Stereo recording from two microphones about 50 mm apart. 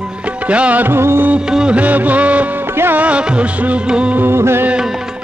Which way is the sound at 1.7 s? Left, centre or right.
Right.